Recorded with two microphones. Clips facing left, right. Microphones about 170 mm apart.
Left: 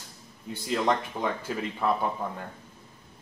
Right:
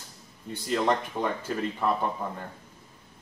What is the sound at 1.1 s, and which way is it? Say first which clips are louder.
Speech: right 1 dB; 15° right (ahead or behind).